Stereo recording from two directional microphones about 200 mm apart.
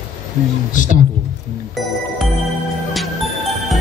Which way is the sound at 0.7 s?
40° left (ahead or behind).